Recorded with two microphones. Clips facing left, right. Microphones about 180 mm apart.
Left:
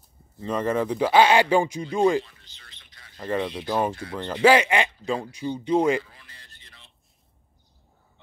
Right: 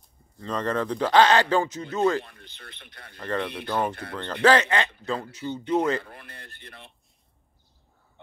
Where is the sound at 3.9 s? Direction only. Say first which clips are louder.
Left 2 dB; 60° right (ahead or behind).